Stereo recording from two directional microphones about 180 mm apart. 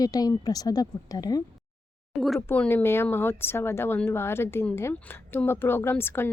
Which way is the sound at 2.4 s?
10° left (ahead or behind).